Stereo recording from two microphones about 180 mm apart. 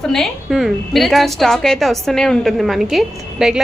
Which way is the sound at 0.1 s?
Centre (ahead or behind).